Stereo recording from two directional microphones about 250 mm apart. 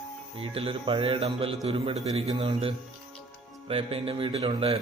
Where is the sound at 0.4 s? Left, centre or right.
Right.